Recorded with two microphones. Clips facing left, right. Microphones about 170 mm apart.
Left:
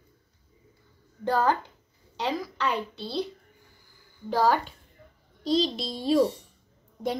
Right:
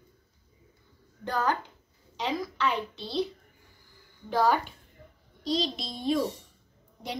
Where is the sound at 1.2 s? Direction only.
30° left (ahead or behind).